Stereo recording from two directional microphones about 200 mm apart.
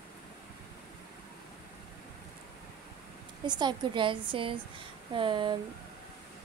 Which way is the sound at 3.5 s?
20° right (ahead or behind).